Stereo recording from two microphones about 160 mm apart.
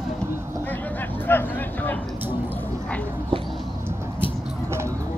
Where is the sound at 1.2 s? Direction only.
10° left (ahead or behind).